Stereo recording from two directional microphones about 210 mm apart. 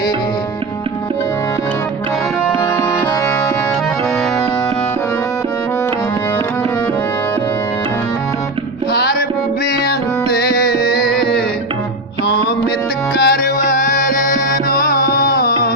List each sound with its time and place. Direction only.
8.9 s music: 50° left (ahead or behind)
13.1 s music: 45° left (ahead or behind)